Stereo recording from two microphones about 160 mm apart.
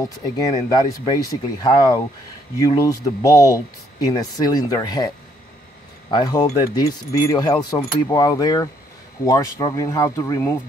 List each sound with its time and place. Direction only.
0.7 s speech: 25° left (ahead or behind)